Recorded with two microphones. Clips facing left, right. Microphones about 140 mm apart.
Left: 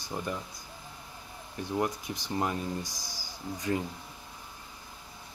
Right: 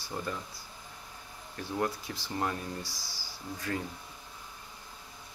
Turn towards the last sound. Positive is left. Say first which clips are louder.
# left 4 dB
turn(degrees=15)  # may be behind; listen again after turning